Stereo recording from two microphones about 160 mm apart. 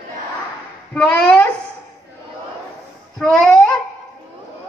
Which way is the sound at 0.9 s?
10° left (ahead or behind).